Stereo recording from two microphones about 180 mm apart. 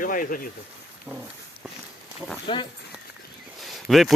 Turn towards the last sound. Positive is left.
turn(degrees=0)  # may be behind; listen again after turning